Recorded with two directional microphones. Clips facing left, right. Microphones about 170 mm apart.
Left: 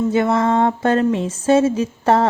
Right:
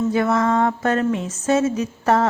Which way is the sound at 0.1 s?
25° left (ahead or behind).